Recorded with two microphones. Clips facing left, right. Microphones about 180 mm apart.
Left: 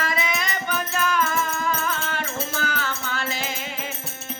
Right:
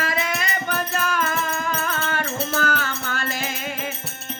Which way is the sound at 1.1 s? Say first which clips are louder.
Even; 55° right (ahead or behind).